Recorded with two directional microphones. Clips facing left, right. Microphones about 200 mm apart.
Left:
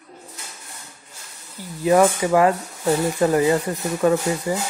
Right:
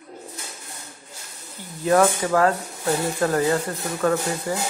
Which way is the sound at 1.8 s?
10° left (ahead or behind).